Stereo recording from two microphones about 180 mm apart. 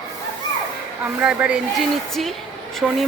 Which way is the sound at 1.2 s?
5° right (ahead or behind).